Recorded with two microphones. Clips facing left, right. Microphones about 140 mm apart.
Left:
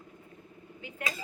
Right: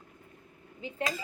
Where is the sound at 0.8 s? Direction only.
20° right (ahead or behind).